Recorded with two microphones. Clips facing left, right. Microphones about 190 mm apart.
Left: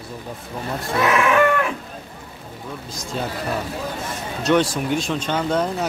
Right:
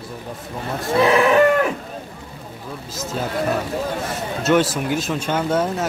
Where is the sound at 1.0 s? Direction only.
35° right (ahead or behind).